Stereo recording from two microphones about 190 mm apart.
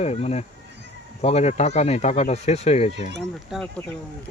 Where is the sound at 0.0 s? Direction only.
35° left (ahead or behind).